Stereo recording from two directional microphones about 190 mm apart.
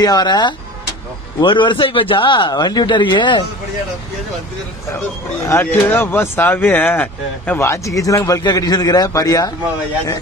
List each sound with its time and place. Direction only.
0.0 s speech: 20° left (ahead or behind)
5.5 s speech: 10° left (ahead or behind)